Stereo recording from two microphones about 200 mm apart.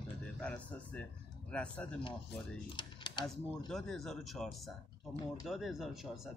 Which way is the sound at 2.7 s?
20° left (ahead or behind).